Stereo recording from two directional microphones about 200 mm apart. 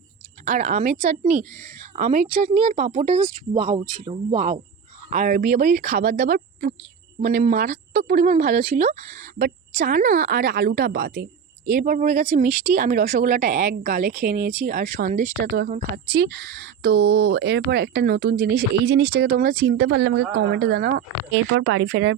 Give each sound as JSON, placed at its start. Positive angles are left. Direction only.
{"t": 0.4, "sound": "a woman's voice", "side_deg": -40}
{"t": 5.1, "sound": "a woman's voice", "side_deg": -40}
{"t": 8.2, "sound": "a woman's voice", "side_deg": -40}
{"t": 9.4, "sound": "speech", "side_deg": -45}
{"t": 11.6, "sound": "speech", "side_deg": -45}
{"t": 21.5, "sound": "a woman's voice", "side_deg": -65}